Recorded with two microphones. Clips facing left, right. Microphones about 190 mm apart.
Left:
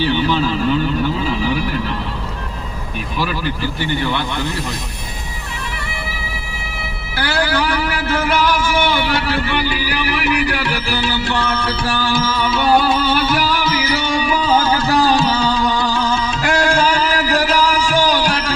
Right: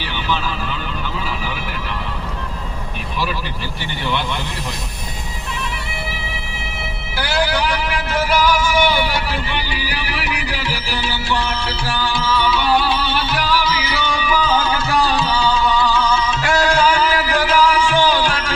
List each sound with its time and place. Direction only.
8.0 s music: 55° left (ahead or behind)